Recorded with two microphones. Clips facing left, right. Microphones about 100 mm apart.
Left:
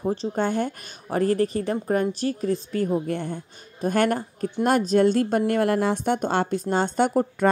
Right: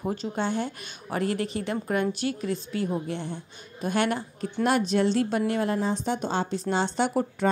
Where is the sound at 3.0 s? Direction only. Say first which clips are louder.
Left 4 dB; 50° left (ahead or behind).